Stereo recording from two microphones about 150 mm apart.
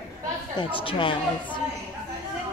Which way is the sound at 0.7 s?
35° left (ahead or behind).